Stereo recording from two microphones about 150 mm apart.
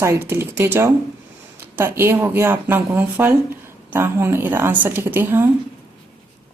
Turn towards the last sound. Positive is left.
turn(degrees=-15)  # may be behind; listen again after turning